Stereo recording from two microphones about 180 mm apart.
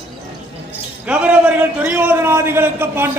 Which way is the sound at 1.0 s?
5° right (ahead or behind).